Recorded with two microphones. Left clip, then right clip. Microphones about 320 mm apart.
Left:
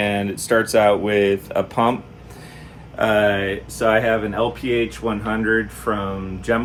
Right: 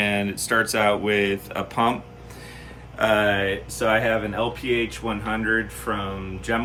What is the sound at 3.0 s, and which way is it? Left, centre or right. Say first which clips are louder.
Speech: left 3 dB; centre.